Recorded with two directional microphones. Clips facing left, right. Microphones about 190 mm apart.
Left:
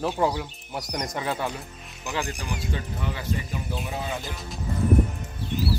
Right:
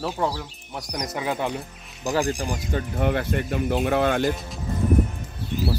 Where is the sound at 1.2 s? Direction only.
15° right (ahead or behind).